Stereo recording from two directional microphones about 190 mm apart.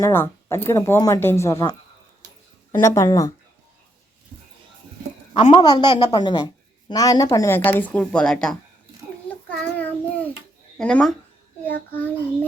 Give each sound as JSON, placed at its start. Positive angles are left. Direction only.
{"t": 0.0, "sound": "a woman's voice", "side_deg": 15}
{"t": 2.7, "sound": "a woman's voice", "side_deg": 15}
{"t": 5.3, "sound": "a woman's voice", "side_deg": 25}
{"t": 9.5, "sound": "child singing", "side_deg": 10}
{"t": 10.8, "sound": "a woman's voice", "side_deg": 5}